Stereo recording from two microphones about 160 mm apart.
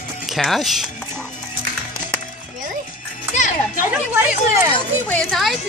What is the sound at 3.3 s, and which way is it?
Children playing, 50° left (ahead or behind).